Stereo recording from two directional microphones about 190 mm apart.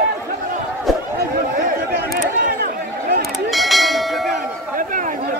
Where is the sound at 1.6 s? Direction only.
50° right (ahead or behind).